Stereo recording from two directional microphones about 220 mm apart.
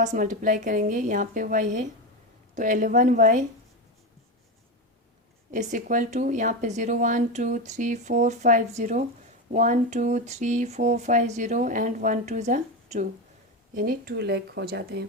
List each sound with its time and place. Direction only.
0.0 s speech: 35° right (ahead or behind)
5.5 s speech: 35° right (ahead or behind)